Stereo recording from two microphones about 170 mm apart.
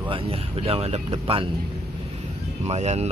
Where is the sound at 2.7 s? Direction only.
40° right (ahead or behind).